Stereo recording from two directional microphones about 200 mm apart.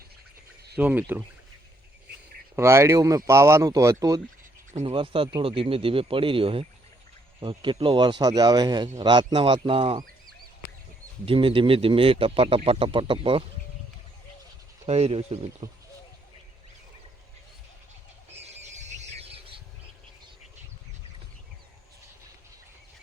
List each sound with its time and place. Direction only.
0.8 s speech: 10° right (ahead or behind)
2.6 s speech: 15° right (ahead or behind)
4.8 s a man's voice: 30° right (ahead or behind)
11.3 s a man's voice: 25° right (ahead or behind)
14.8 s speech: 30° right (ahead or behind)
18.3 s bird: 35° right (ahead or behind)